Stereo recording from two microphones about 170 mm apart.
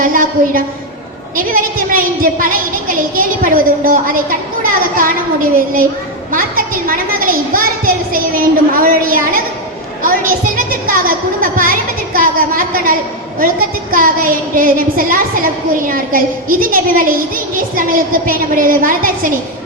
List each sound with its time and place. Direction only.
0.0 s a woman's voice: 55° right (ahead or behind)